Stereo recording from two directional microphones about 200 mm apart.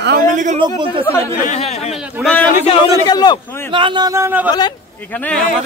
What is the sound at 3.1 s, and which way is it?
Speech, 20° left (ahead or behind).